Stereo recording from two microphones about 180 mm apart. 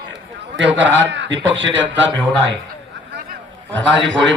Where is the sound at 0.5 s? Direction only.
90° right.